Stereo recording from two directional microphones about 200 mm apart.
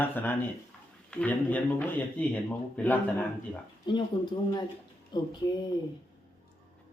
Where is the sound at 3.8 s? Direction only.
20° left (ahead or behind).